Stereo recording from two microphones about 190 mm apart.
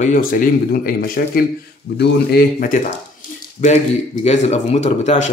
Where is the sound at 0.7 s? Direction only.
50° left (ahead or behind).